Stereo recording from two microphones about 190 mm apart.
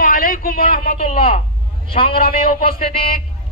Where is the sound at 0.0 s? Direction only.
50° left (ahead or behind).